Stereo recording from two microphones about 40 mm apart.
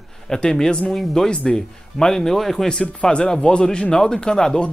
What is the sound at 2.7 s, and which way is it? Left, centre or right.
Speech, left.